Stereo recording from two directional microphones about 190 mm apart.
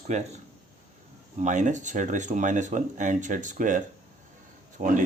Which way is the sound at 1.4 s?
40° right (ahead or behind).